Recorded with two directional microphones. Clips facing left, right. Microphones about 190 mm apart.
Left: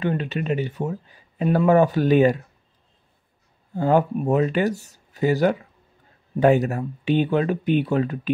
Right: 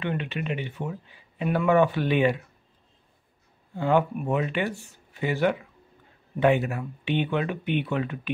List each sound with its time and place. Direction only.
0.0 s speech: 40° left (ahead or behind)
3.7 s speech: 40° left (ahead or behind)